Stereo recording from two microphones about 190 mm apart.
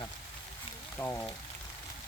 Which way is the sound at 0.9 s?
10° left (ahead or behind).